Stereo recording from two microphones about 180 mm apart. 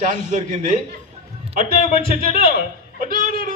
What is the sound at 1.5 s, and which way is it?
Speech, 30° left (ahead or behind).